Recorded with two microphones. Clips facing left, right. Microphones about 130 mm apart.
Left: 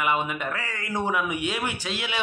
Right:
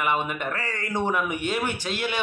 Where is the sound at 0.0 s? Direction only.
5° left (ahead or behind).